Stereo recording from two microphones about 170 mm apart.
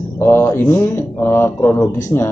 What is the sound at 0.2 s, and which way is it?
A man's voice, 15° left (ahead or behind).